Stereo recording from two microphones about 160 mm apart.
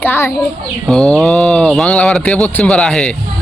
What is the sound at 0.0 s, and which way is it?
A man's voice, 10° left (ahead or behind).